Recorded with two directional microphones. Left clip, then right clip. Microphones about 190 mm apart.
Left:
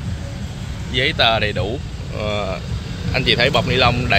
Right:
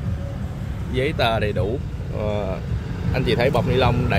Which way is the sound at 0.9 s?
10° right (ahead or behind).